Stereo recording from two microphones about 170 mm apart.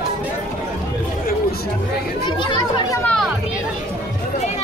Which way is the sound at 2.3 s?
30° left (ahead or behind).